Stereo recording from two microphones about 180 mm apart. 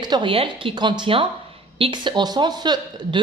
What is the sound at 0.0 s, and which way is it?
A woman's voice, 25° right (ahead or behind).